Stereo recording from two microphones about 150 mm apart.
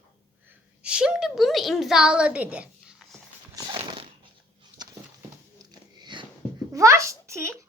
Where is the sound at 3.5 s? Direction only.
25° right (ahead or behind).